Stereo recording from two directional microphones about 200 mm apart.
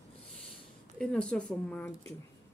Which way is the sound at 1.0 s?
5° left (ahead or behind).